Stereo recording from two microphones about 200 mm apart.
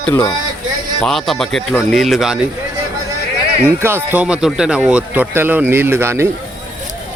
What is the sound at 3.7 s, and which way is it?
A man's voice, 10° right (ahead or behind).